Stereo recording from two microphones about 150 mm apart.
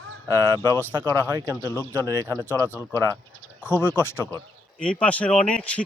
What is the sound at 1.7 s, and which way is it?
Speech, 15° left (ahead or behind).